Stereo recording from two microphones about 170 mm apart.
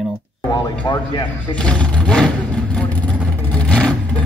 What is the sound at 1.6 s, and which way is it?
Speech, 5° left (ahead or behind).